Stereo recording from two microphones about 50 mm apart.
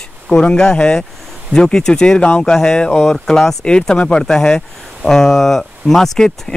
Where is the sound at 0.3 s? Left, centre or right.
Centre.